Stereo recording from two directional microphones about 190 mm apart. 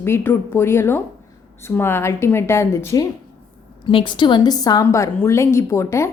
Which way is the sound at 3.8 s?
25° left (ahead or behind).